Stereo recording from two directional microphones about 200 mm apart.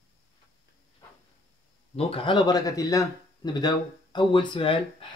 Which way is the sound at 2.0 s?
30° left (ahead or behind).